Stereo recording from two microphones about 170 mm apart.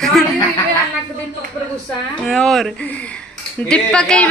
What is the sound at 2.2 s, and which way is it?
A woman's voice, centre (ahead or behind).